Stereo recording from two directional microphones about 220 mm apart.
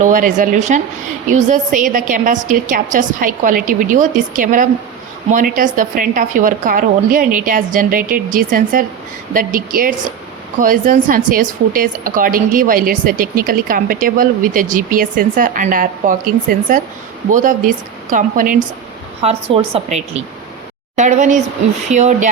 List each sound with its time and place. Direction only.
0.0 s speech: 35° right (ahead or behind)
19.2 s a woman's voice: 25° right (ahead or behind)